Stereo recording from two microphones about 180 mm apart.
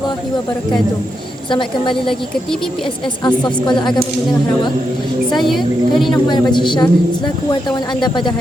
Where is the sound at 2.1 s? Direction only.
Centre (ahead or behind).